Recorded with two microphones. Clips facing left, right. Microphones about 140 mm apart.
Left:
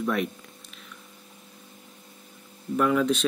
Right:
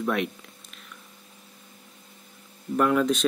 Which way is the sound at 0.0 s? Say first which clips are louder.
Even; centre (ahead or behind).